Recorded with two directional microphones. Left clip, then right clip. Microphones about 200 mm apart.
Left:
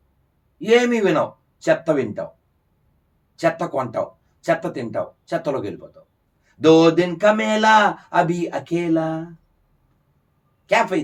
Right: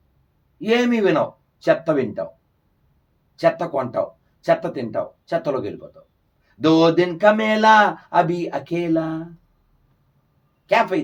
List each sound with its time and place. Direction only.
0.6 s speech: 20° right (ahead or behind)
3.3 s speech: 20° right (ahead or behind)
10.7 s speech: 20° right (ahead or behind)